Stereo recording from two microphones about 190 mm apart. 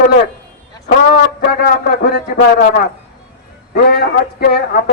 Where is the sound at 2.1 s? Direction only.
50° left (ahead or behind).